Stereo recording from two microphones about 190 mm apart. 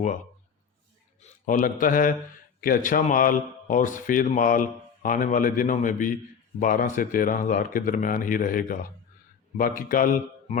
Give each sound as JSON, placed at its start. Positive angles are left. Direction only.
{"t": 1.2, "sound": "a man's voice", "side_deg": 45}